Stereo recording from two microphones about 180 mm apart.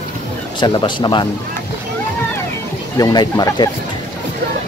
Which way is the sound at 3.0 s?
20° left (ahead or behind).